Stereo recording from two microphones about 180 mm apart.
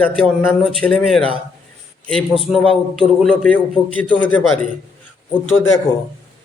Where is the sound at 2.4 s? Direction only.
Centre (ahead or behind).